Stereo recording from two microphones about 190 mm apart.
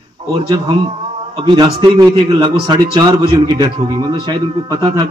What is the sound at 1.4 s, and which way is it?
A man's voice, 25° right (ahead or behind).